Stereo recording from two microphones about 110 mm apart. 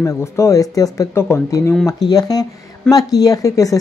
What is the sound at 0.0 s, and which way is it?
Speech, 25° left (ahead or behind).